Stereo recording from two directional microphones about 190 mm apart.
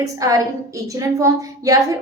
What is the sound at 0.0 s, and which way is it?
A woman's voice, 15° right (ahead or behind).